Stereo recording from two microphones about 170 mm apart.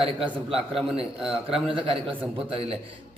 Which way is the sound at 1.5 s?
30° right (ahead or behind).